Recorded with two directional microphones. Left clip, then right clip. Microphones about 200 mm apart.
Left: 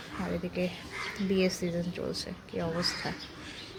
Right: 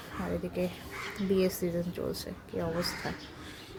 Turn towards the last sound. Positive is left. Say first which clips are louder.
# left 1 dB
turn(degrees=-10)  # may be behind; listen again after turning